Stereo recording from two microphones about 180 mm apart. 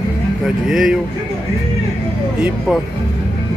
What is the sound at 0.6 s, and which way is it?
Speech, centre (ahead or behind).